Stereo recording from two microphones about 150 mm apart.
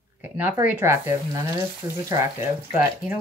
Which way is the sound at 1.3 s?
20° right (ahead or behind).